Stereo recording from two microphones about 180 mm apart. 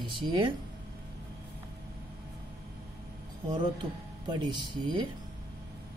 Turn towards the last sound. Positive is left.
turn(degrees=-25)  # may be behind; listen again after turning